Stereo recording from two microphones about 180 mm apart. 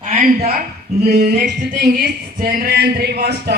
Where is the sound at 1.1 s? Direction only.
65° right (ahead or behind).